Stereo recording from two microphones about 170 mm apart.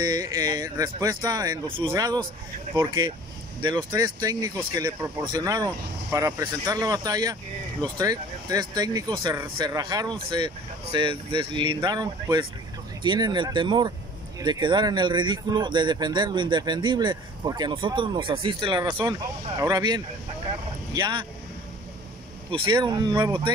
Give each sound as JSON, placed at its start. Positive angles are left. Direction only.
{"t": 0.0, "sound": "speech", "side_deg": -25}
{"t": 22.5, "sound": "speech", "side_deg": -30}